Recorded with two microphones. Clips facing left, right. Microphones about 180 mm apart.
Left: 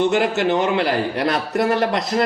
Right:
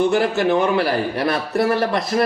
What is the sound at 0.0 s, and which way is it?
A man's voice, 20° left (ahead or behind).